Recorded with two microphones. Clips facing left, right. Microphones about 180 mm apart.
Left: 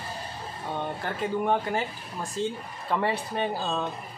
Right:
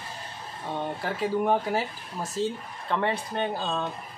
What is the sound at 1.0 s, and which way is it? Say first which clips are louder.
Speech: right 3 dB; centre (ahead or behind).